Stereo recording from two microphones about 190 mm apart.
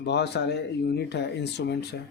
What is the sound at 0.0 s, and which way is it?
Speech, 65° left (ahead or behind).